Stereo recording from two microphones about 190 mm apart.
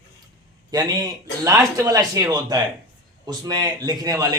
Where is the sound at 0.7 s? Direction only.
20° right (ahead or behind).